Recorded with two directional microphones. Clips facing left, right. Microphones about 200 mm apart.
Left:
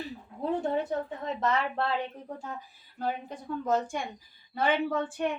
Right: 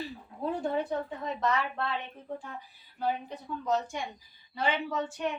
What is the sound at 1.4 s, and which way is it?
Speech, 30° left (ahead or behind).